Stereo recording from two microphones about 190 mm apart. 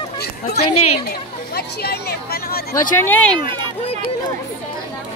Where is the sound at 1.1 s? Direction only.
55° left (ahead or behind).